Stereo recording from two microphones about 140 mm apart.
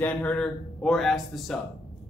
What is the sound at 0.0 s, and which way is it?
A man's voice, 10° left (ahead or behind).